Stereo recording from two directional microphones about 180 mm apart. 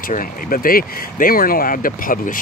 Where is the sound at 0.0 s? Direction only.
50° left (ahead or behind).